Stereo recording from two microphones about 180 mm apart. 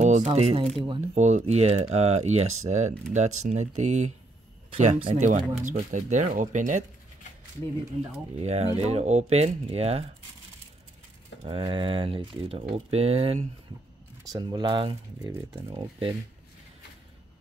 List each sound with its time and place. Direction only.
0.0 s speech: 40° right (ahead or behind)
8.4 s speech: 35° right (ahead or behind)
11.4 s speech: 30° right (ahead or behind)
14.2 s speech: 20° right (ahead or behind)